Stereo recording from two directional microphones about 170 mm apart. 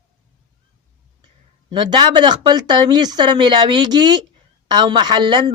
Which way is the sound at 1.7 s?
30° right (ahead or behind).